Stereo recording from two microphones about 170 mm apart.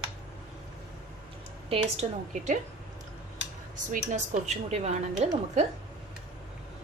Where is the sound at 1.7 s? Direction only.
35° right (ahead or behind).